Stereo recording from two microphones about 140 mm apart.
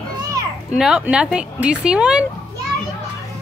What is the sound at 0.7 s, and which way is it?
Speech, 5° right (ahead or behind).